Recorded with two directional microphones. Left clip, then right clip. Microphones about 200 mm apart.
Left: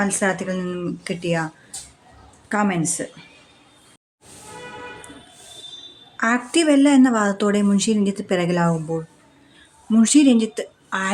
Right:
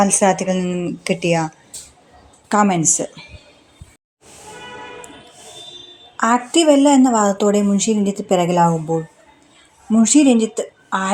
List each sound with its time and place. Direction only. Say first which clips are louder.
0.0 s speech: right 7 dB; 15° right (ahead or behind)
2.5 s speech: right 6 dB; 20° right (ahead or behind)
6.1 s a woman's voice: right 4 dB; 5° right (ahead or behind)
9.9 s a woman's voice: right 2 dB; centre (ahead or behind)